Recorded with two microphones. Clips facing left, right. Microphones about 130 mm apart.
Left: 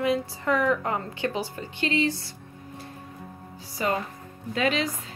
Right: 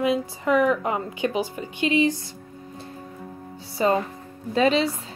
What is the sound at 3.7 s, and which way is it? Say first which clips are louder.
A woman's voice: right 6 dB; 30° right (ahead or behind).